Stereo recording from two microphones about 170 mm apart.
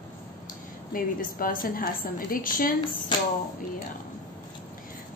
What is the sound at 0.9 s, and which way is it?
Speech, 55° left (ahead or behind).